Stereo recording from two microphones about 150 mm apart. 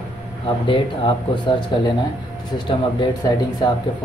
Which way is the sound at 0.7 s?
35° left (ahead or behind).